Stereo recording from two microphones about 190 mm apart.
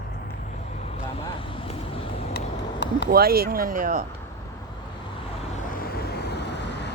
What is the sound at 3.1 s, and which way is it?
Speech, 55° right (ahead or behind).